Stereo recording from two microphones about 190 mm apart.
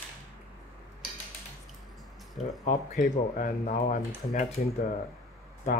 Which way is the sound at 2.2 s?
Centre (ahead or behind).